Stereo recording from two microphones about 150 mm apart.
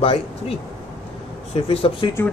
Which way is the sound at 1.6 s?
40° left (ahead or behind).